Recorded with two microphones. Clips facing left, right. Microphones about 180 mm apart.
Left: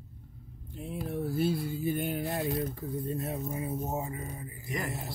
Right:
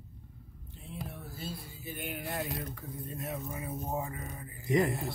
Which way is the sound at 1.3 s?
65° left (ahead or behind).